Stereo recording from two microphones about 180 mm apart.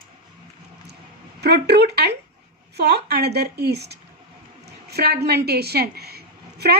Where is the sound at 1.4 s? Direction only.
65° right (ahead or behind).